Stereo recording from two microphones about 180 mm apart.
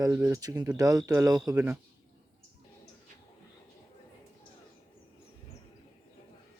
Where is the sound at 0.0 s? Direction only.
20° right (ahead or behind).